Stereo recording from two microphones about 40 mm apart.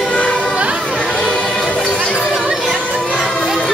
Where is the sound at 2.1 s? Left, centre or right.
Centre.